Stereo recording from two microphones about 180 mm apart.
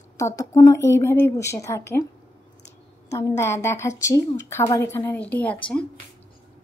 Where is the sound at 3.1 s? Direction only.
15° left (ahead or behind).